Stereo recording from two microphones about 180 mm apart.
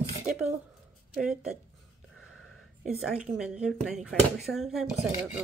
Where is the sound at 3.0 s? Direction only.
5° right (ahead or behind).